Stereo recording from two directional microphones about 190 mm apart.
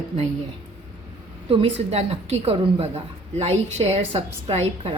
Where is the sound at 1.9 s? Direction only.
35° right (ahead or behind).